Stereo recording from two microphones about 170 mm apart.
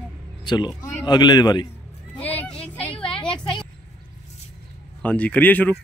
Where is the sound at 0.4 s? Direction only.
25° left (ahead or behind).